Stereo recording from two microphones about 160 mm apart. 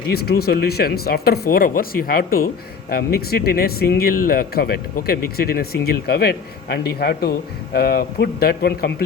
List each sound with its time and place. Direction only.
0.1 s speech: 75° left (ahead or behind)